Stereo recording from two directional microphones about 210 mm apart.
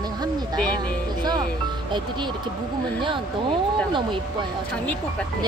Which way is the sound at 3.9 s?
20° right (ahead or behind).